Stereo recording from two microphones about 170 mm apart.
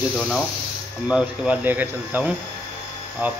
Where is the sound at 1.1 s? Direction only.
10° right (ahead or behind).